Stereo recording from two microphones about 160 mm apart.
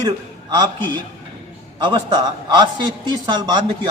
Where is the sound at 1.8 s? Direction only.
25° right (ahead or behind).